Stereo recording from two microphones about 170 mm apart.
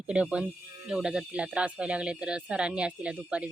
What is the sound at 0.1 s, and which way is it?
Speech, 5° right (ahead or behind).